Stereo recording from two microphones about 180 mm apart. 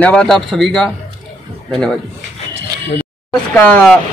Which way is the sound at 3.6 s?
5° left (ahead or behind).